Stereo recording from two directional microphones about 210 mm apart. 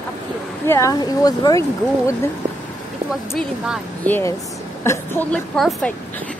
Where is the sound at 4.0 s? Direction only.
10° left (ahead or behind).